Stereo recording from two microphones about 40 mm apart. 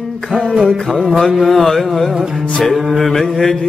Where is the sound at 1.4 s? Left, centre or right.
Centre.